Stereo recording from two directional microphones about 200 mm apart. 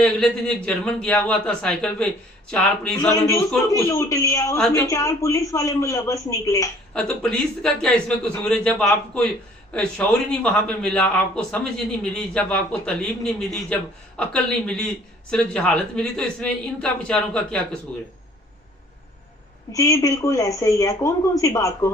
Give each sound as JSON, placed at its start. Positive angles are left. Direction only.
{"t": 0.0, "sound": "a man's voice", "side_deg": 5}
{"t": 6.9, "sound": "a man's voice", "side_deg": 5}
{"t": 9.7, "sound": "a man's voice", "side_deg": 5}
{"t": 19.7, "sound": "a woman's voice", "side_deg": 15}